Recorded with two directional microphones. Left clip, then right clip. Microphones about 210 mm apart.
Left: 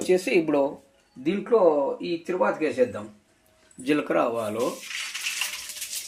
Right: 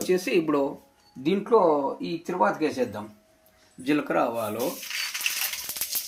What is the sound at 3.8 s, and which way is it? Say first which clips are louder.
Speech: left 1 dB; 20° right (ahead or behind).